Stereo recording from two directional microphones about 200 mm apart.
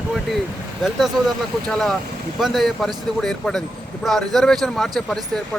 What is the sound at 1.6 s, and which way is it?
Speech, 5° left (ahead or behind).